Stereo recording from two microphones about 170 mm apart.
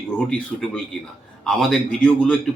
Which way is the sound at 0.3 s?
5° left (ahead or behind).